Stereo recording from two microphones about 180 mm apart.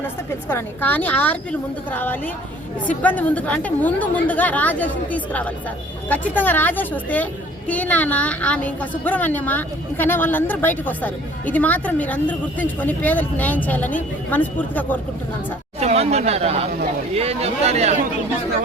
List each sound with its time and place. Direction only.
0.4 s a woman's voice: 10° left (ahead or behind)
15.8 s speech: 35° right (ahead or behind)